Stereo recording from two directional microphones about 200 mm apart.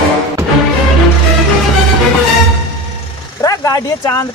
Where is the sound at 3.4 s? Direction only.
15° left (ahead or behind).